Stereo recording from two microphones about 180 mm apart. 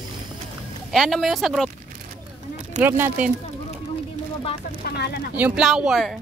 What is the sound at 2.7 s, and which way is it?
Speech, 10° right (ahead or behind).